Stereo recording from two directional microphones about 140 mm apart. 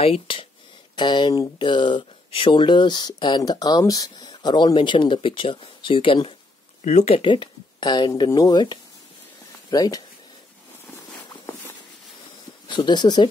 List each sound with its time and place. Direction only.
0.0 s speech: 40° left (ahead or behind)
6.8 s speech: 60° left (ahead or behind)
7.2 s speech: 35° left (ahead or behind)
11.2 s walk: 20° left (ahead or behind)
12.6 s speech: 35° left (ahead or behind)